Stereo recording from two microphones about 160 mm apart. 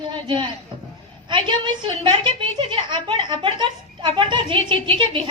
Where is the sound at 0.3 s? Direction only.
30° right (ahead or behind).